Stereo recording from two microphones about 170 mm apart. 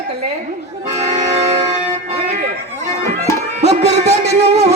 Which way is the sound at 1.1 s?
40° right (ahead or behind).